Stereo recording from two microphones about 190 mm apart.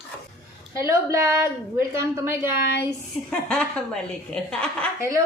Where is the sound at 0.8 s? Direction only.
15° right (ahead or behind).